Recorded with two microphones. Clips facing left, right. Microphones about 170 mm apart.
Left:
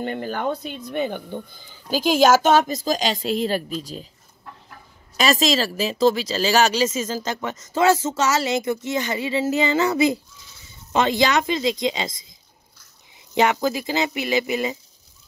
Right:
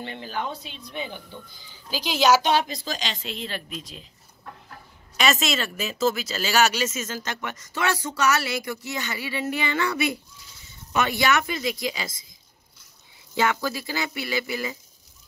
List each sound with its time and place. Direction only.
0.0 s speech: 50° left (ahead or behind)
5.1 s speech: 35° left (ahead or behind)
13.3 s speech: 20° left (ahead or behind)